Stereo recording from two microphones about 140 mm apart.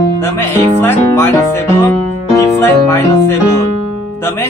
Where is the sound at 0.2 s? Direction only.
15° left (ahead or behind).